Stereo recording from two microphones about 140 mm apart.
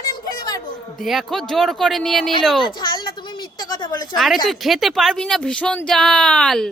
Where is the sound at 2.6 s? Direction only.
30° left (ahead or behind).